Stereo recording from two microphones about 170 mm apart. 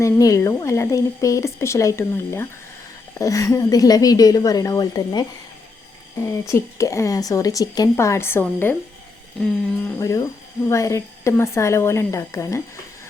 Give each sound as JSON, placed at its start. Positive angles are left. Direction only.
{"t": 0.0, "sound": "a woman's voice", "side_deg": 20}
{"t": 6.5, "sound": "a woman's voice", "side_deg": 20}